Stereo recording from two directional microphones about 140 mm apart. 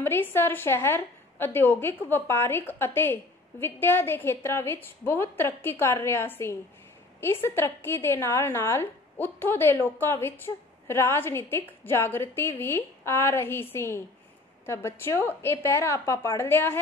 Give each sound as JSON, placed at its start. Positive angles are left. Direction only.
{"t": 0.0, "sound": "a woman's voice", "side_deg": 15}